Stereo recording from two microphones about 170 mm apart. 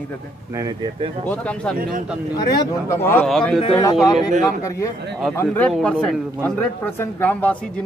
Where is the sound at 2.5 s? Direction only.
15° left (ahead or behind).